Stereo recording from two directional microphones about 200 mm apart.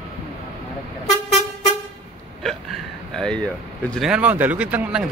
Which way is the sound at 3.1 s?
5° left (ahead or behind).